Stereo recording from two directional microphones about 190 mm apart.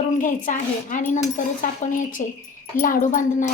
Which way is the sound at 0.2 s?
45° left (ahead or behind).